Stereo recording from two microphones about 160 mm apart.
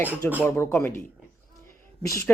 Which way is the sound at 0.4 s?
15° left (ahead or behind).